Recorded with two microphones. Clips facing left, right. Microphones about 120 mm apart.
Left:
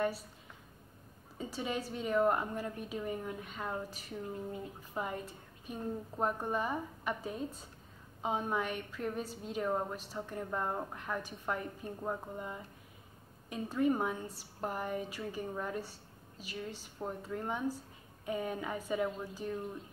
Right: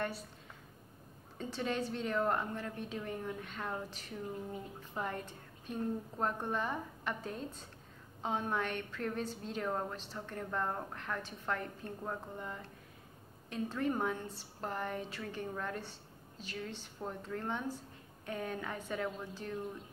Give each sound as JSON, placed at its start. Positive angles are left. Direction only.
{"t": 1.4, "sound": "a woman's voice", "side_deg": 10}